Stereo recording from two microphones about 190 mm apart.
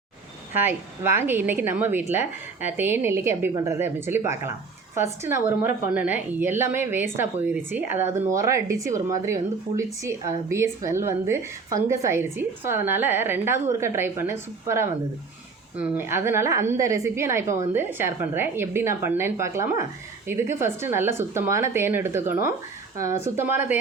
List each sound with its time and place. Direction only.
0.5 s a woman's voice: 10° right (ahead or behind)
2.1 s speech: 40° left (ahead or behind)
2.7 s a woman's voice: 10° right (ahead or behind)